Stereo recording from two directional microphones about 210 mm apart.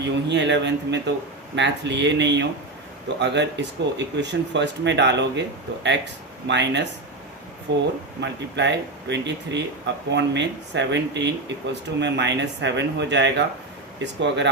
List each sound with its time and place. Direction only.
0.0 s speech: 55° right (ahead or behind)
6.5 s speech: 55° right (ahead or behind)